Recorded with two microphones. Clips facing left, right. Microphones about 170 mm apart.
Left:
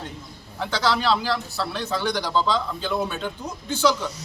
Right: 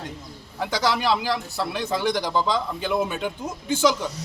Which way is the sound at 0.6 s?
10° right (ahead or behind).